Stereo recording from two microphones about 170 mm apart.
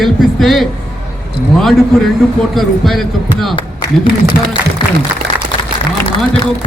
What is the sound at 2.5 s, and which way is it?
Speech, centre (ahead or behind).